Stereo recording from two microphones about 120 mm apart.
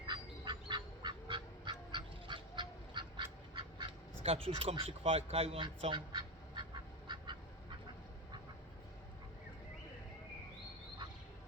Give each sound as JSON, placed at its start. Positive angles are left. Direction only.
{"t": 0.1, "sound": "duck", "side_deg": -40}
{"t": 4.2, "sound": "speech", "side_deg": -55}
{"t": 5.8, "sound": "duck", "side_deg": -40}